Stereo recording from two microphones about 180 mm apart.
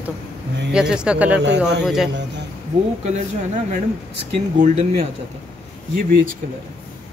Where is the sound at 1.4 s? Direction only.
70° right (ahead or behind).